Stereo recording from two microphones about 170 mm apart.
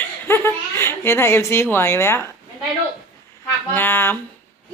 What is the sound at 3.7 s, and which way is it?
Speech, 10° left (ahead or behind).